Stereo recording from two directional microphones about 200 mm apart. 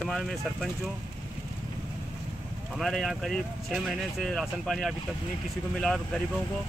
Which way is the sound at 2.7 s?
Centre (ahead or behind).